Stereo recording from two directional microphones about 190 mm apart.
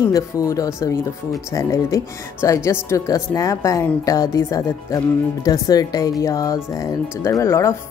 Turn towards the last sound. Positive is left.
turn(degrees=15)  # may be behind; listen again after turning